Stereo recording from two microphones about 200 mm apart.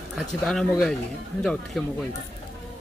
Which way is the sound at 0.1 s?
Centre (ahead or behind).